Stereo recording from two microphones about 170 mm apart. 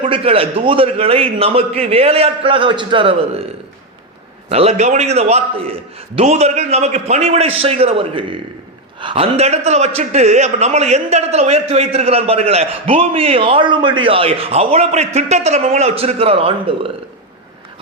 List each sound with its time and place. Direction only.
0.1 s a man's voice: 35° right (ahead or behind)
4.4 s a man's voice: 40° right (ahead or behind)